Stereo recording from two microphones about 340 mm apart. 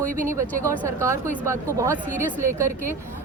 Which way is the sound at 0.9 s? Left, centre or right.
Centre.